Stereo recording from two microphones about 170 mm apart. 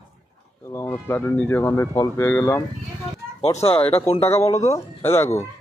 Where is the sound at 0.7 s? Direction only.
15° left (ahead or behind).